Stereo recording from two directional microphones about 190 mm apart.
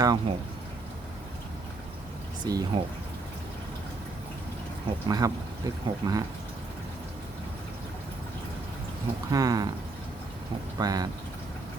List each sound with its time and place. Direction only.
0.0 s speech: 20° right (ahead or behind)
2.4 s speech: 20° right (ahead or behind)
5.0 s speech: 20° right (ahead or behind)
9.3 s speech: 20° right (ahead or behind)
10.8 s speech: 20° right (ahead or behind)